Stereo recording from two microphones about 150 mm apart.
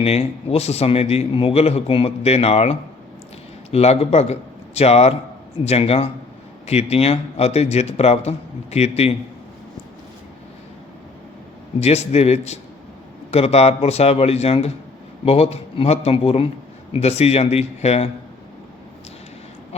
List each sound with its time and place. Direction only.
0.0 s a man's voice: 45° left (ahead or behind)
11.8 s a man's voice: 45° left (ahead or behind)